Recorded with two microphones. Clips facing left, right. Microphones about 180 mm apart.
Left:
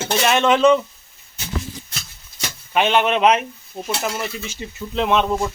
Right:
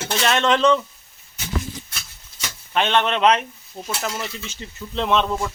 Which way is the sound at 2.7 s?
10° left (ahead or behind).